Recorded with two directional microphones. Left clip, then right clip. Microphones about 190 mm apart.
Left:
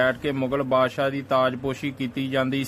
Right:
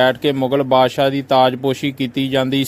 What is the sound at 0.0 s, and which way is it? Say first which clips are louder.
A man's voice: right 8 dB; 25° right (ahead or behind).